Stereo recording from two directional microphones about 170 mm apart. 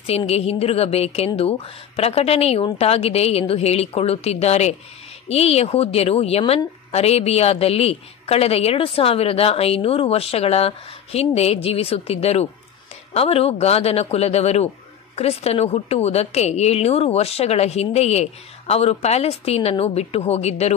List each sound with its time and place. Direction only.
0.0 s a woman's voice: 35° left (ahead or behind)